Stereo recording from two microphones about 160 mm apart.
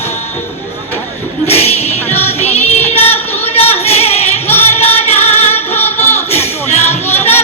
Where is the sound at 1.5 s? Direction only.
40° left (ahead or behind).